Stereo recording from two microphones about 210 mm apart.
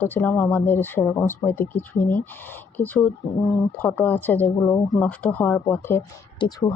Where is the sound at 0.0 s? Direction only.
10° left (ahead or behind).